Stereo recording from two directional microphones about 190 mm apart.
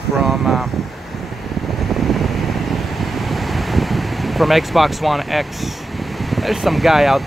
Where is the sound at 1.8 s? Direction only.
Centre (ahead or behind).